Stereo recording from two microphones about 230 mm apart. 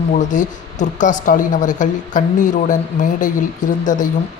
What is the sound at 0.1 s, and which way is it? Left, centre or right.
Speech, left.